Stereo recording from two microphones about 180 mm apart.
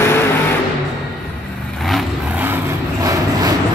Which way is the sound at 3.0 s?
20° right (ahead or behind).